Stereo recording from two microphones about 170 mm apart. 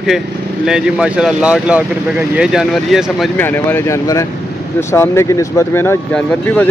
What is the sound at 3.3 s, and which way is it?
Speech, 10° left (ahead or behind).